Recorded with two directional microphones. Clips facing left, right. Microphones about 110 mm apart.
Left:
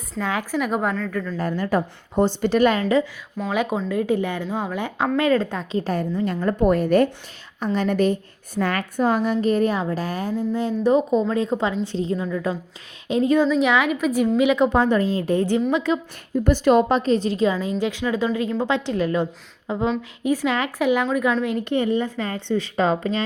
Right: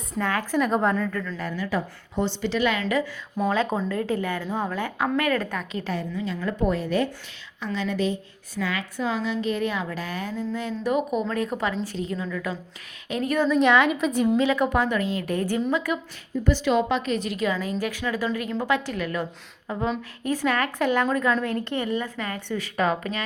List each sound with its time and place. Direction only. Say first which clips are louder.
0.2 s speech: even; 15° left (ahead or behind)
1.4 s a woman's voice: left 8 dB; 45° left (ahead or behind)
3.5 s a woman's voice: left 5 dB; 15° left (ahead or behind); by 5.9 s 30° left (ahead or behind)
5.9 s a woman's voice: left 4 dB; 50° left (ahead or behind); by 13.5 s 20° left (ahead or behind)
13.5 s a woman's voice: even; 5° left (ahead or behind)
14.4 s a woman's voice: left 4 dB; 20° left (ahead or behind)
16.4 s a woman's voice: left 5 dB; 45° left (ahead or behind); by 23.2 s 25° left (ahead or behind)